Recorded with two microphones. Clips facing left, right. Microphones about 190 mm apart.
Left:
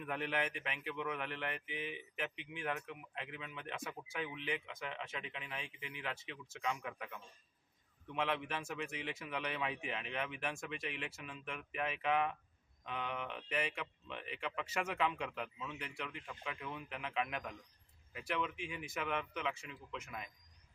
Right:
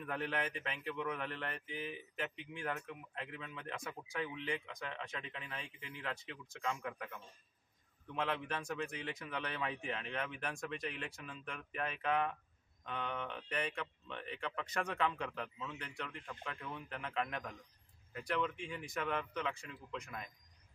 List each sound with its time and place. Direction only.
0.0 s speech: centre (ahead or behind)